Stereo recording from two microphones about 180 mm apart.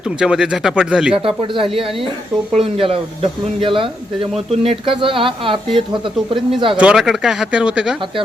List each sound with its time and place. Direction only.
0.2 s speech: 5° right (ahead or behind)
1.2 s speech: 30° right (ahead or behind)
6.7 s speech: 5° right (ahead or behind)